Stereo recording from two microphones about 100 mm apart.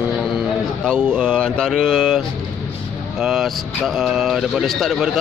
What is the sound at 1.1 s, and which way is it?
Speech, 5° left (ahead or behind).